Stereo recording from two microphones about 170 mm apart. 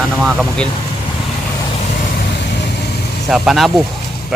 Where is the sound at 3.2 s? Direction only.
Centre (ahead or behind).